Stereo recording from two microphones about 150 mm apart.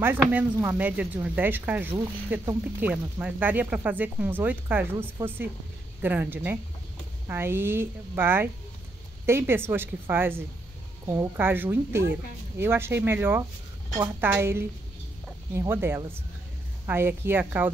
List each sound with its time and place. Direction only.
0.0 s speech: 10° right (ahead or behind)